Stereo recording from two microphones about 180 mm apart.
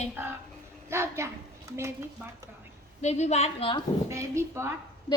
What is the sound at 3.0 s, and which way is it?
Speech, 40° left (ahead or behind).